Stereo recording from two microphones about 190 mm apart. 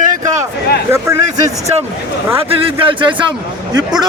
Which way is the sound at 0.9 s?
15° right (ahead or behind).